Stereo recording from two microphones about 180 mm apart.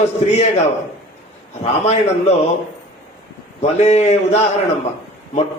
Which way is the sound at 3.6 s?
35° left (ahead or behind).